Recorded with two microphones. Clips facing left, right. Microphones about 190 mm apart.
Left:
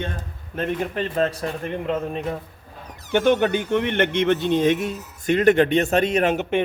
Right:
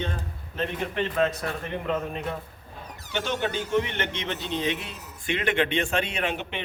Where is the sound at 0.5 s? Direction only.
55° left (ahead or behind).